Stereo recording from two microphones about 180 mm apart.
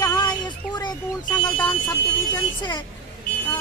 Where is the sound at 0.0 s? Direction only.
25° left (ahead or behind).